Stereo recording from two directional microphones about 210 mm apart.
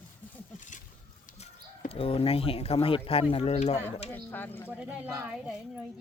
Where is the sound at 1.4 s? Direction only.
30° left (ahead or behind).